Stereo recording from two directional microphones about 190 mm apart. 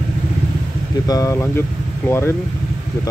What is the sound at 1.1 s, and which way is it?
Speech, 15° left (ahead or behind).